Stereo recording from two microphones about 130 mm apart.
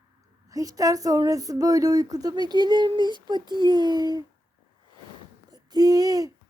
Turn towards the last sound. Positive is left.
turn(degrees=-30)  # may be behind; listen again after turning